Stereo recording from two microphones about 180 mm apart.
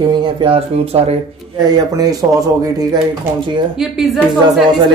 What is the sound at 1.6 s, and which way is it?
Speech, 20° right (ahead or behind).